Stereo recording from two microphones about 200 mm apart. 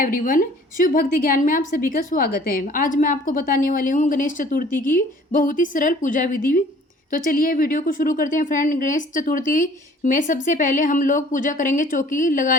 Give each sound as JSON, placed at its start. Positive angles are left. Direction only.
{"t": 0.0, "sound": "a woman's voice", "side_deg": 45}